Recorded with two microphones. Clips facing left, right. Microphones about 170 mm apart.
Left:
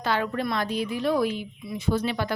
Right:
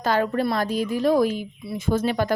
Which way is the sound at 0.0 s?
40° right (ahead or behind).